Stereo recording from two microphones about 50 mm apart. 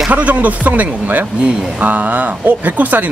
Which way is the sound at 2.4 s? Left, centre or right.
Right.